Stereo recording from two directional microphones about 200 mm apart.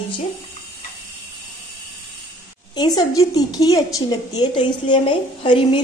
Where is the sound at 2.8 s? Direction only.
20° left (ahead or behind).